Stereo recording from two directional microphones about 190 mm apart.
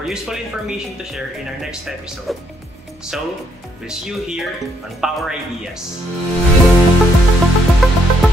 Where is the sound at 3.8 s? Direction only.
5° right (ahead or behind).